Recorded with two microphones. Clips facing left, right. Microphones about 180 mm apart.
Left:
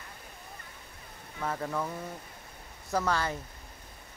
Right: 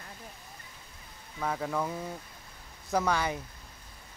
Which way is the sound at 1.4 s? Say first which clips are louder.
Right 1 dB; 5° right (ahead or behind).